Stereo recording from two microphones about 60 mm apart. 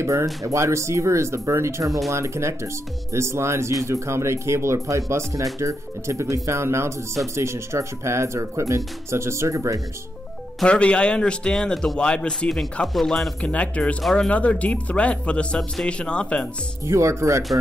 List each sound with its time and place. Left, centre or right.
0.0 s speech: right
10.6 s speech: centre
13.4 s speech: left
16.8 s speech: right